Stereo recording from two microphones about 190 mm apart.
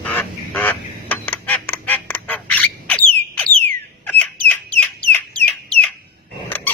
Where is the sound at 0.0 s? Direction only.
10° left (ahead or behind).